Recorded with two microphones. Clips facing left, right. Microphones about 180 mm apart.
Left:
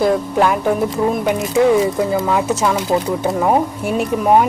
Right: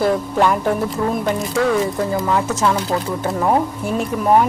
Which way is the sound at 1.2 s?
15° left (ahead or behind).